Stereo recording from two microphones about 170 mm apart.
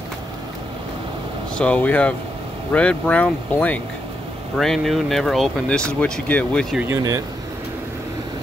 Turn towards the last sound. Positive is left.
turn(degrees=-20)  # may be behind; listen again after turning